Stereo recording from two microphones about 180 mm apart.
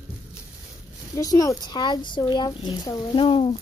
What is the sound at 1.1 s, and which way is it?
A child's voice, 20° left (ahead or behind).